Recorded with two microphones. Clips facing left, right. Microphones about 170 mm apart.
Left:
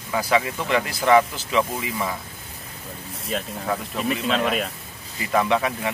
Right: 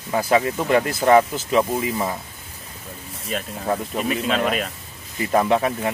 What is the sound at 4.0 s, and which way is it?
Speech, 5° right (ahead or behind).